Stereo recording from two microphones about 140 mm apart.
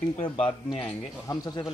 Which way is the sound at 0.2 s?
40° left (ahead or behind).